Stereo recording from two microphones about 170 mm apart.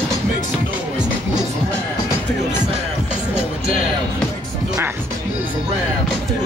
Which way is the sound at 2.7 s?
40° right (ahead or behind).